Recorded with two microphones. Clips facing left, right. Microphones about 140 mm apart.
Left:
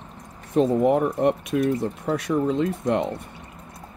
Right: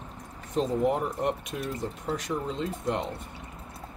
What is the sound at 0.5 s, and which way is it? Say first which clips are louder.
Speech: left 7 dB; 65° left (ahead or behind).